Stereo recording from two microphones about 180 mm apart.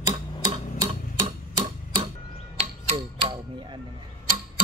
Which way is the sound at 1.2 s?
25° right (ahead or behind).